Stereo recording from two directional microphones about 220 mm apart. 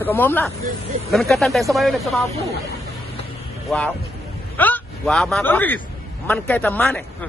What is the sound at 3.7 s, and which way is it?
A man's voice, centre (ahead or behind).